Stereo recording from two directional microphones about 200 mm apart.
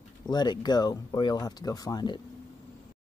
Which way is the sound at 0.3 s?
20° left (ahead or behind).